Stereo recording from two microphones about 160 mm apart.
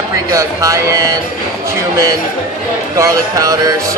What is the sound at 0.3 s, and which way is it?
Speech, 20° right (ahead or behind).